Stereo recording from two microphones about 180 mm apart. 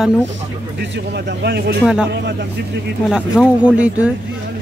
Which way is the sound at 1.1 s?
65° right (ahead or behind).